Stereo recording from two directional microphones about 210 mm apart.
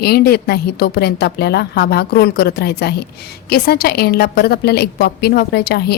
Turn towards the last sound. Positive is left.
turn(degrees=50)  # may be behind; listen again after turning